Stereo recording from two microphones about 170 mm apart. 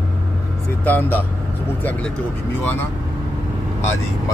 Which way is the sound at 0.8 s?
10° left (ahead or behind).